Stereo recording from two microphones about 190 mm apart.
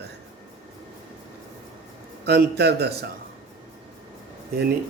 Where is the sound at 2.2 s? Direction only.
60° right (ahead or behind).